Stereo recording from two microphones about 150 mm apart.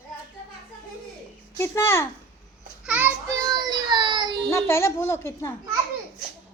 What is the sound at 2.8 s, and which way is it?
Child singing, 10° right (ahead or behind).